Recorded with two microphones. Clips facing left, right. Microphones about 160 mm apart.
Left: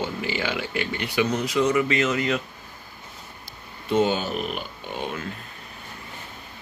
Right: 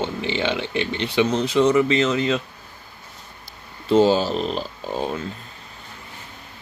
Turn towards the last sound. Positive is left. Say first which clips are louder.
# right 5 dB
turn(degrees=-35)  # may be behind; listen again after turning